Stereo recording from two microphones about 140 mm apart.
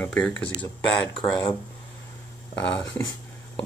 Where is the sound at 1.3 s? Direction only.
30° left (ahead or behind).